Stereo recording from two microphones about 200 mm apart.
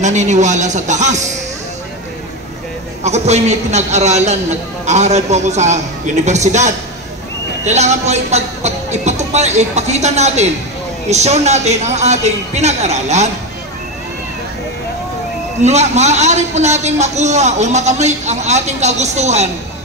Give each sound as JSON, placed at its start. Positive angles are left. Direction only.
{"t": 0.0, "sound": "a man's voice", "side_deg": -35}
{"t": 3.0, "sound": "a man's voice", "side_deg": -35}
{"t": 15.6, "sound": "a man's voice", "side_deg": -35}